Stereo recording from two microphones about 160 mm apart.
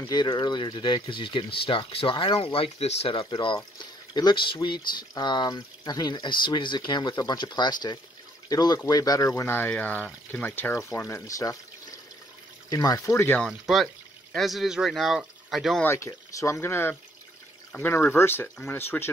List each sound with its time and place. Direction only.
0.0 s speech: 25° left (ahead or behind)
12.6 s speech: 20° left (ahead or behind)
13.4 s speech: centre (ahead or behind)
15.8 s speech: 15° left (ahead or behind)